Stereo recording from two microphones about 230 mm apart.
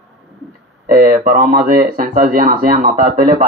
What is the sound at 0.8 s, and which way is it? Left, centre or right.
Speech, right.